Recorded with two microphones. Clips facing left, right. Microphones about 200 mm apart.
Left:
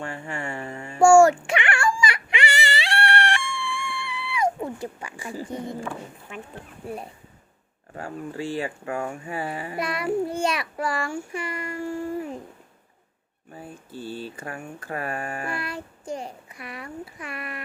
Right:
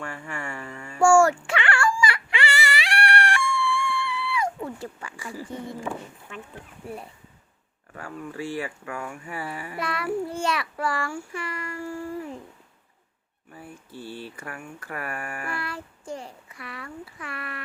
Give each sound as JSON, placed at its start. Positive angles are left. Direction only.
{"t": 0.0, "sound": "mantra", "side_deg": 25}
{"t": 1.0, "sound": "a sound", "side_deg": 20}
{"t": 6.8, "sound": "speech", "side_deg": 20}
{"t": 7.9, "sound": "speech", "side_deg": 30}
{"t": 13.5, "sound": "speech", "side_deg": 25}